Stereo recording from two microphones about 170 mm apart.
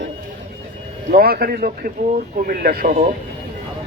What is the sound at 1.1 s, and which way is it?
A man's voice, 65° right (ahead or behind).